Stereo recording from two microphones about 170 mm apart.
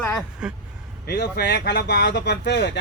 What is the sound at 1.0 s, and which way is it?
Speech, 75° left (ahead or behind).